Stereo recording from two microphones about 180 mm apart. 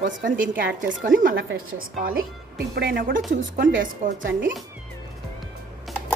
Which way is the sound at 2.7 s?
65° right (ahead or behind).